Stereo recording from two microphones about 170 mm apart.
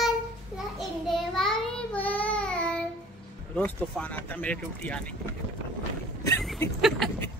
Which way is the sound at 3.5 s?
10° left (ahead or behind).